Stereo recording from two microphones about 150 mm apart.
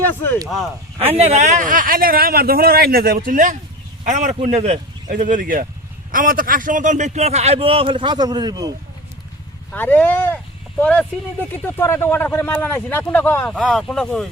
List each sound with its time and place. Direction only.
0.0 s speech: 15° left (ahead or behind)
0.4 s speech: centre (ahead or behind)
1.2 s a man's voice: 50° right (ahead or behind); by 8.7 s 25° right (ahead or behind)
9.7 s speech: 10° left (ahead or behind)